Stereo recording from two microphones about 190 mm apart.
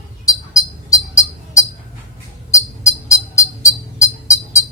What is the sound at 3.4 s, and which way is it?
Insect, 15° left (ahead or behind).